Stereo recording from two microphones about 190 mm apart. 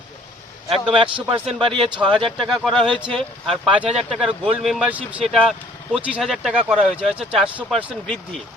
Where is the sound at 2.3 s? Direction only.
Centre (ahead or behind).